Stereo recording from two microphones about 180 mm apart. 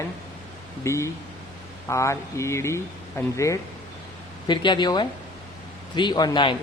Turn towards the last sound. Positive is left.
turn(degrees=25)  # may be behind; listen again after turning